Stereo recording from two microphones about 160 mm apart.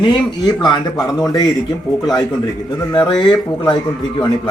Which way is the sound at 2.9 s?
25° left (ahead or behind).